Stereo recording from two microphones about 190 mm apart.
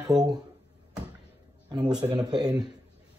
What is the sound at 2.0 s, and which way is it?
Speech, 20° right (ahead or behind).